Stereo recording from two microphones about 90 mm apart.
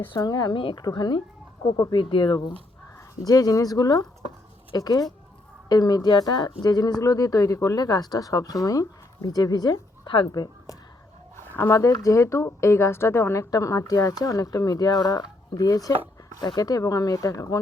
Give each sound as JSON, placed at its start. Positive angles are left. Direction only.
{"t": 0.2, "sound": "speech", "side_deg": 45}
{"t": 3.2, "sound": "speech", "side_deg": 45}
{"t": 11.7, "sound": "speech", "side_deg": 35}